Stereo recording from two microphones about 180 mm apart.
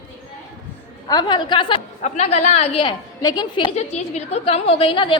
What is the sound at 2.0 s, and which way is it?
Speech, 40° left (ahead or behind).